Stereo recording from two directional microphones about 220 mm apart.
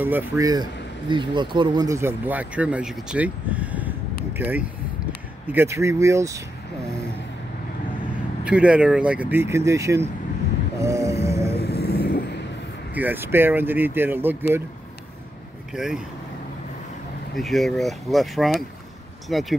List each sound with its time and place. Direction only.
0.0 s speech: 10° right (ahead or behind)
8.5 s speech: 5° right (ahead or behind)
10.8 s a sound: 15° right (ahead or behind)
11.6 s vehicle: 45° left (ahead or behind)
12.9 s speech: 10° right (ahead or behind)
15.7 s speech: centre (ahead or behind)
17.4 s speech: centre (ahead or behind)